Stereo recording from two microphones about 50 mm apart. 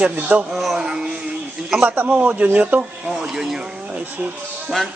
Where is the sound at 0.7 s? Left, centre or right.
Centre.